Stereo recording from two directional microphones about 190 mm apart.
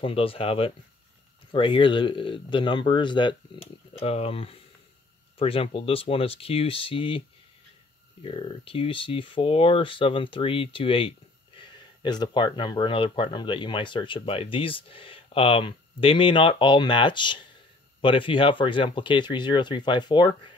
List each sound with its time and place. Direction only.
0.0 s speech: 30° left (ahead or behind)